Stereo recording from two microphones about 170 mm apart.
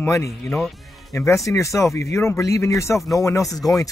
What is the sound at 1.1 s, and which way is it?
Speech, 15° left (ahead or behind).